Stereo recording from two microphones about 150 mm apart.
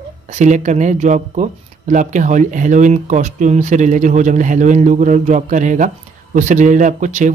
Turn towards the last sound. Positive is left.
turn(degrees=-55)  # may be behind; listen again after turning